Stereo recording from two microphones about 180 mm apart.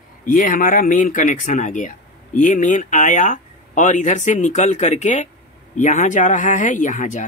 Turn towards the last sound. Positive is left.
turn(degrees=45)  # may be behind; listen again after turning